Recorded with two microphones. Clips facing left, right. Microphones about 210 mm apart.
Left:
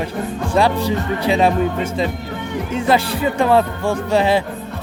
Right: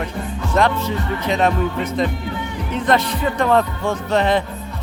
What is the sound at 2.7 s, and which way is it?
Speech, 10° left (ahead or behind).